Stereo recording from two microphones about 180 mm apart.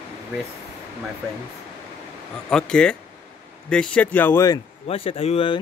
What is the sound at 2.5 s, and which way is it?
Speech, 5° left (ahead or behind).